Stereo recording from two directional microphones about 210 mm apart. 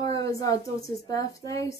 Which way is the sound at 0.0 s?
15° left (ahead or behind).